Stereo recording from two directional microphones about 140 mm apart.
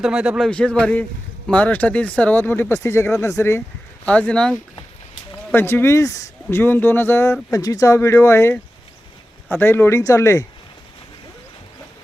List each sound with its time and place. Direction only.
0.0 s speech: 5° right (ahead or behind); by 3.6 s 20° left (ahead or behind)
4.0 s speech: 10° left (ahead or behind)